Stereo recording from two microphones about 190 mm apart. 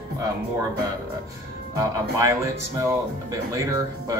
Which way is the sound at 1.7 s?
15° right (ahead or behind).